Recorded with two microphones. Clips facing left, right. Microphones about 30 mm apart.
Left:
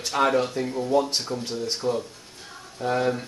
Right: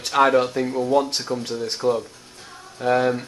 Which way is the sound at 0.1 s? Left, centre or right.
Right.